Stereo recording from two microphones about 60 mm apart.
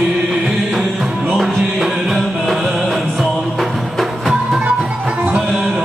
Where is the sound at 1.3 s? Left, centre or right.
Centre.